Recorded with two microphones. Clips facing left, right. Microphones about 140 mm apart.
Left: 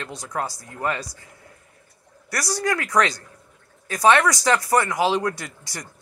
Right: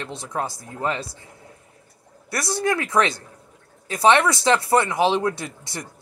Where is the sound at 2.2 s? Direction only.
25° right (ahead or behind).